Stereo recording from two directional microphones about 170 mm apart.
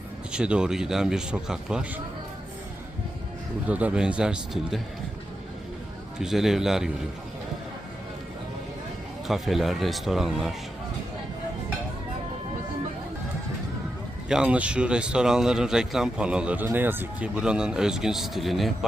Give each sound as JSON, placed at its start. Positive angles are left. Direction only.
{"t": 0.3, "sound": "speech", "side_deg": -5}
{"t": 3.7, "sound": "speech", "side_deg": -10}
{"t": 6.1, "sound": "speech", "side_deg": 0}
{"t": 9.2, "sound": "speech", "side_deg": 0}
{"t": 14.3, "sound": "speech", "side_deg": -5}